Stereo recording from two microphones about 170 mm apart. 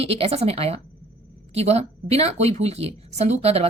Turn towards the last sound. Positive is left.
turn(degrees=-35)  # may be behind; listen again after turning